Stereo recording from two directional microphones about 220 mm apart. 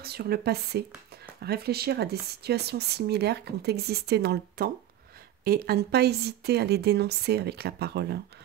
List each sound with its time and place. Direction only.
0.0 s speech: 45° right (ahead or behind)